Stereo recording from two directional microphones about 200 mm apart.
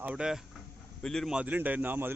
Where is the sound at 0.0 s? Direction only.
5° right (ahead or behind).